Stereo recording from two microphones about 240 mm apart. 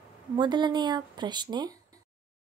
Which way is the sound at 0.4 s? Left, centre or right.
Centre.